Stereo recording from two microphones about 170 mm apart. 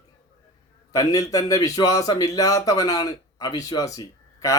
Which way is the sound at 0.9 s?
20° left (ahead or behind).